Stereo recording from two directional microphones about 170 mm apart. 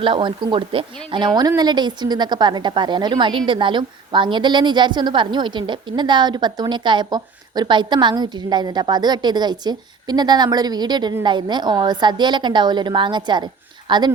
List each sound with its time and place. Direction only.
0.0 s a woman's voice: 30° right (ahead or behind)